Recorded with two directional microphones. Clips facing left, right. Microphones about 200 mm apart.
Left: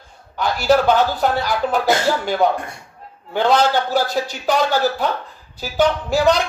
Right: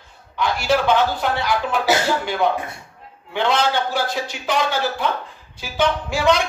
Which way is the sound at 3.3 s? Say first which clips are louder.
Left 4 dB; 40° left (ahead or behind).